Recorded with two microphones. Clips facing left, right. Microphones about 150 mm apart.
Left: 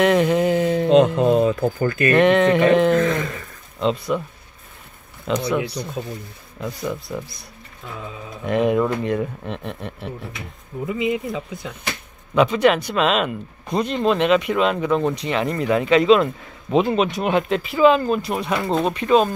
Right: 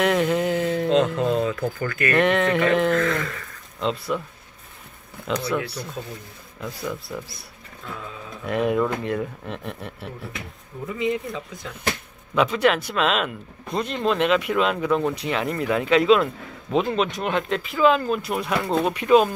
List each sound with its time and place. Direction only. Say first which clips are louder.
0.0 s a sound: left 4 dB; centre (ahead or behind)
0.8 s speech: left 6 dB; 20° left (ahead or behind)
2.1 s speech: left 5 dB; centre (ahead or behind)
2.9 s speech: left 4 dB; 20° left (ahead or behind)
3.8 s speech: left 4 dB; centre (ahead or behind)
5.3 s speech: left 3 dB; centre (ahead or behind)
6.6 s speech: left 4 dB; centre (ahead or behind)
8.5 s speech: left 3 dB; centre (ahead or behind)
10.9 s speech: left 2 dB; 10° left (ahead or behind)
12.4 s speech: left 4 dB; centre (ahead or behind)